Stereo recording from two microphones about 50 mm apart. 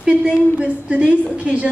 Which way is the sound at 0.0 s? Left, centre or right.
Centre.